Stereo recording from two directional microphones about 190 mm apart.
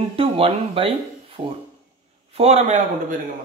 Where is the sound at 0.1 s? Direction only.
30° right (ahead or behind).